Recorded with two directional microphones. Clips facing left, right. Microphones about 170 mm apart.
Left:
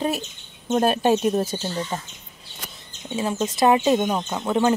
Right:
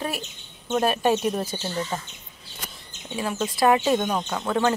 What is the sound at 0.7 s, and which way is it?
Speech, 40° left (ahead or behind).